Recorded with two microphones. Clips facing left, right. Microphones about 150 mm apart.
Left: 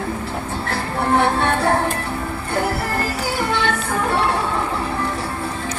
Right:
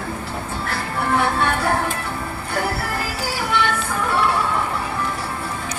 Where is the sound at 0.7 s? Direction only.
30° left (ahead or behind).